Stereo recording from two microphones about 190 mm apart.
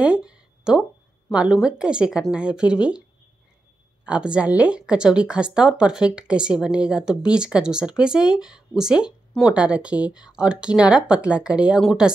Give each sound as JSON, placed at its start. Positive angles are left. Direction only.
{"t": 0.0, "sound": "a sound", "side_deg": -5}
{"t": 1.3, "sound": "a woman's voice", "side_deg": -5}
{"t": 4.0, "sound": "a woman's voice", "side_deg": -5}